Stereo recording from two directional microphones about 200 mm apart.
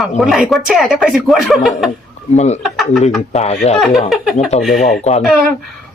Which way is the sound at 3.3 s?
35° left (ahead or behind).